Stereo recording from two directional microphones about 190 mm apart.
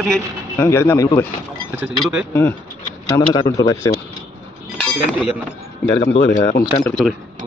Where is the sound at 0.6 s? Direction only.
15° left (ahead or behind).